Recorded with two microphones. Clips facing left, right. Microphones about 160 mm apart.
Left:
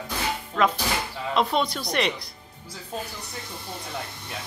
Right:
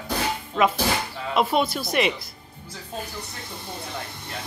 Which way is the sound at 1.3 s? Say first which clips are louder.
Right 2 dB; 5° right (ahead or behind).